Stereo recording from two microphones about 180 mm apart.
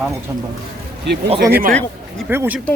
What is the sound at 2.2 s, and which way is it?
Speech, 10° right (ahead or behind).